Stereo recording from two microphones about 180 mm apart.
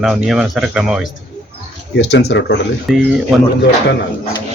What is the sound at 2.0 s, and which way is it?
Speech, 70° left (ahead or behind).